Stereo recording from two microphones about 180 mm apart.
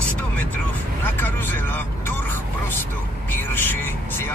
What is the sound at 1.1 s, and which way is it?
Vehicle, 10° left (ahead or behind).